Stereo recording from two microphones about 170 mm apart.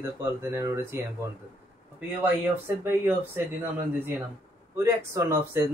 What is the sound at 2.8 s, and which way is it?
Speech, 15° right (ahead or behind).